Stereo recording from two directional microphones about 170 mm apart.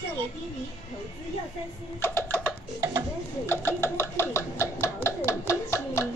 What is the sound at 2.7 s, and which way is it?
Tick-tock, 20° right (ahead or behind).